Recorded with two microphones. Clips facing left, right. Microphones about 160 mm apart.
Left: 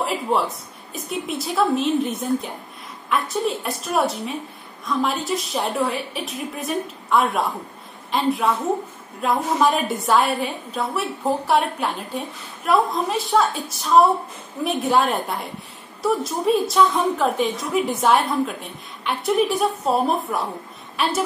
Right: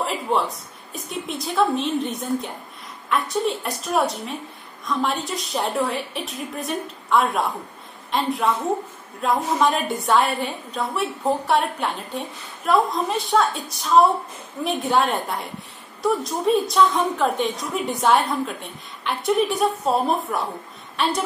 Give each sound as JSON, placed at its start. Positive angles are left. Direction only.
{"t": 0.0, "sound": "a woman's voice", "side_deg": 0}